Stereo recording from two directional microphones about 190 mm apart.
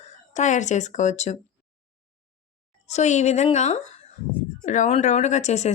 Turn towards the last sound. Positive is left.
turn(degrees=35)  # may be behind; listen again after turning